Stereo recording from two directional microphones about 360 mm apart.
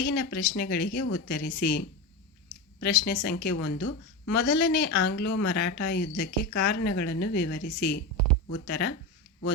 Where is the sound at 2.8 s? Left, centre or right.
Left.